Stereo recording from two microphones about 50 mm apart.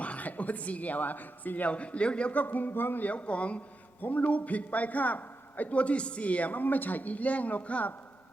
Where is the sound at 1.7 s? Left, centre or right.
Left.